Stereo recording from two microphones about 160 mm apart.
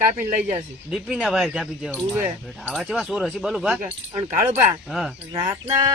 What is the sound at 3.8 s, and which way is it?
Speech, 45° right (ahead or behind).